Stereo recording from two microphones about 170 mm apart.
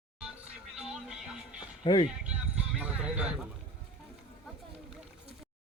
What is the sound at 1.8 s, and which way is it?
Speech, 30° left (ahead or behind).